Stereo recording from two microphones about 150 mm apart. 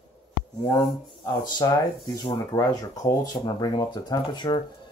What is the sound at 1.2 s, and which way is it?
Speech, 25° left (ahead or behind).